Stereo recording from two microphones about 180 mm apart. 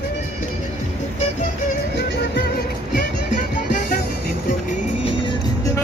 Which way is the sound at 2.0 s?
70° left (ahead or behind).